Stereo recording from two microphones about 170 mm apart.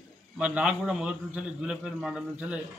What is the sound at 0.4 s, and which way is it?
A man's voice, 5° right (ahead or behind).